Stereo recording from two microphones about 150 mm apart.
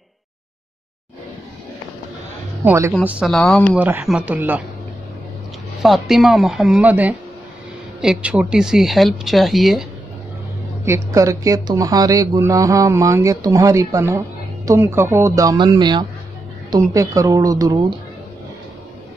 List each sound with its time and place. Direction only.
2.6 s speech: 20° right (ahead or behind)
3.1 s speech: 5° right (ahead or behind)
3.7 s speech: 10° right (ahead or behind)
5.8 s speech: centre (ahead or behind)
10.9 s speech: 20° right (ahead or behind)